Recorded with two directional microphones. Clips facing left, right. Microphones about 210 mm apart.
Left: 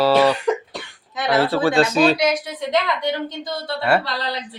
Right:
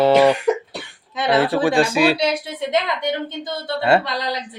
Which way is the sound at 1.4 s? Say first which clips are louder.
Even; 15° right (ahead or behind).